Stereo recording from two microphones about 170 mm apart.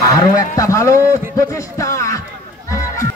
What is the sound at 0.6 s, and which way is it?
Speech, 20° left (ahead or behind).